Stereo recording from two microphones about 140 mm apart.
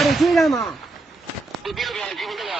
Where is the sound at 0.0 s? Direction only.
Centre (ahead or behind).